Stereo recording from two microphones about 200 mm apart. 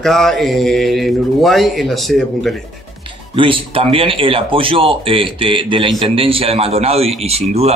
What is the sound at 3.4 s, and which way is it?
Speech, 25° right (ahead or behind).